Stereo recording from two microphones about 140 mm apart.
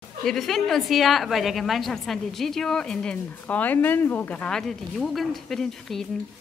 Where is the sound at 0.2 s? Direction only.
Centre (ahead or behind).